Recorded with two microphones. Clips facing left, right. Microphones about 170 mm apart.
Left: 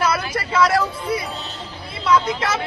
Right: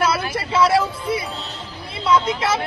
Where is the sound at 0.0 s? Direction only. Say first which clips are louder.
Right 1 dB; 25° right (ahead or behind).